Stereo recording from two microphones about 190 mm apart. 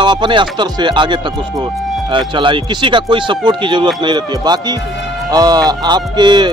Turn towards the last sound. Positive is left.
turn(degrees=-25)  # may be behind; listen again after turning